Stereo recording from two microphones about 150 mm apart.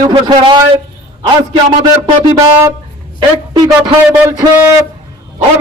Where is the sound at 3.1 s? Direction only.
25° right (ahead or behind).